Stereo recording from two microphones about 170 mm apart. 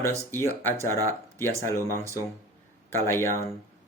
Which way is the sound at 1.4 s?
15° left (ahead or behind).